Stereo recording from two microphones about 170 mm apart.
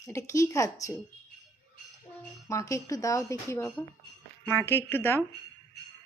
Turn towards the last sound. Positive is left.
turn(degrees=15)  # may be behind; listen again after turning